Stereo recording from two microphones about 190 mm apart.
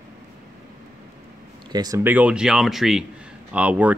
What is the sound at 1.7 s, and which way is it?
Speech, 20° right (ahead or behind).